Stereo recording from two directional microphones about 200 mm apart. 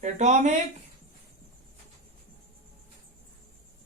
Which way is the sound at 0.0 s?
35° right (ahead or behind).